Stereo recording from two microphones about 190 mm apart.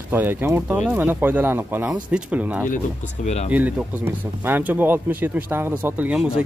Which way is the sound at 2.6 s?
40° left (ahead or behind).